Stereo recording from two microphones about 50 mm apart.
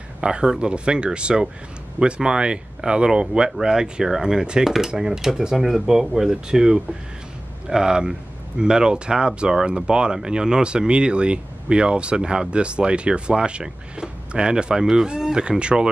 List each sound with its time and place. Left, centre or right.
0.2 s speech: centre